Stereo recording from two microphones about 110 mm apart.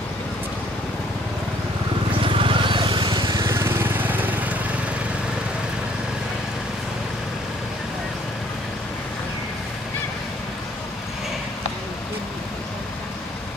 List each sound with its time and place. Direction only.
2.2 s vehicle: 50° right (ahead or behind)
3.4 s lawn mower: 25° right (ahead or behind)